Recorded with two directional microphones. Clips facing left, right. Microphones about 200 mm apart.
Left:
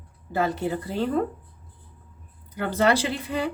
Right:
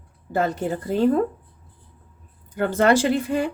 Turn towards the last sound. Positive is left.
turn(degrees=-50)  # may be behind; listen again after turning